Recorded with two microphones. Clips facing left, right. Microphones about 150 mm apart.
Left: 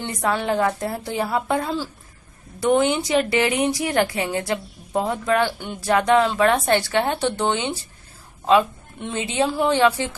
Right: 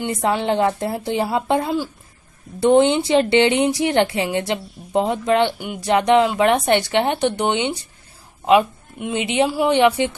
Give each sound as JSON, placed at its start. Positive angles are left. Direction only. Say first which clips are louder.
{"t": 0.0, "sound": "speech", "louder": "right 3 dB", "side_deg": -20}